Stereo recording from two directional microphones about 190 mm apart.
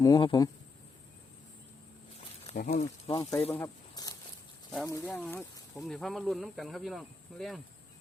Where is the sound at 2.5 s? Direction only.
50° left (ahead or behind).